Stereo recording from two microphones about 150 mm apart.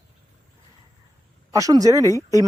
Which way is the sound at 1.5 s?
20° right (ahead or behind).